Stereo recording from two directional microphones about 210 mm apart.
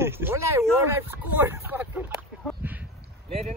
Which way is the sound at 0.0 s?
10° right (ahead or behind).